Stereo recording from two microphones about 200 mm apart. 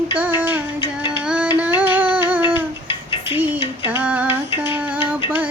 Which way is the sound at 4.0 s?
10° right (ahead or behind).